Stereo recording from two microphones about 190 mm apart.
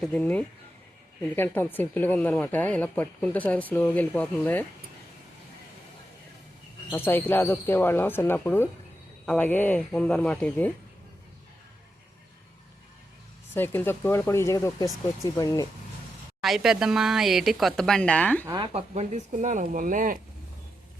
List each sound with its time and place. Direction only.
0.0 s speech: 5° left (ahead or behind)
6.9 s speech: 10° left (ahead or behind)
13.5 s speech: 10° left (ahead or behind)
16.4 s speech: centre (ahead or behind)
18.4 s speech: 20° right (ahead or behind)
18.7 s speech: 35° right (ahead or behind)